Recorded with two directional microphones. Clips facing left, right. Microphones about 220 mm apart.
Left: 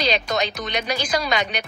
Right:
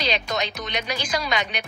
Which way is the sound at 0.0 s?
35° left (ahead or behind).